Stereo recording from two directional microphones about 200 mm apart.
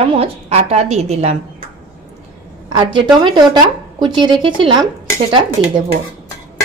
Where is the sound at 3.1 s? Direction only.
20° right (ahead or behind).